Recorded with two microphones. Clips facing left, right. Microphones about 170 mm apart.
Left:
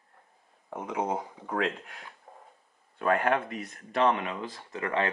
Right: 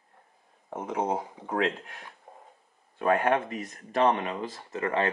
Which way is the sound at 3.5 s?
40° right (ahead or behind).